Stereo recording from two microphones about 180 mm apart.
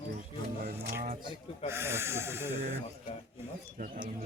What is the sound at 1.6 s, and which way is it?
Snort, 15° right (ahead or behind).